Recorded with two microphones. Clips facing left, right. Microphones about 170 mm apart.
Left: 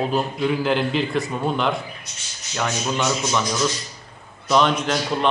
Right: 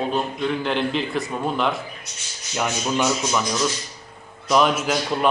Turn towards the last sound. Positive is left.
turn(degrees=-5)  # may be behind; listen again after turning